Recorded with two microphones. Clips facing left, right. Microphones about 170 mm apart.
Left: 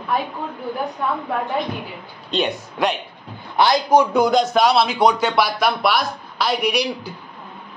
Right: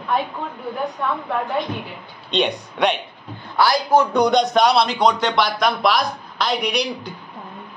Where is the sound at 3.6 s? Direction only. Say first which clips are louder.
Left 1 dB; 20° left (ahead or behind).